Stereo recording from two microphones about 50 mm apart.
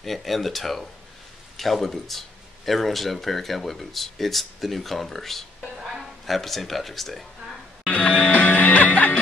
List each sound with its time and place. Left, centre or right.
0.0 s speech: centre
5.6 s a sound: centre
6.2 s speech: centre
7.8 s music: left